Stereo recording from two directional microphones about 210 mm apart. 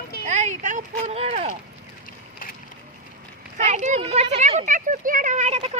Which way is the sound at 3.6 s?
35° right (ahead or behind).